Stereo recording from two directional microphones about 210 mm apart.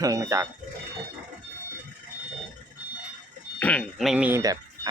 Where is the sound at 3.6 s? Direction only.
5° left (ahead or behind); by 4.6 s 15° right (ahead or behind).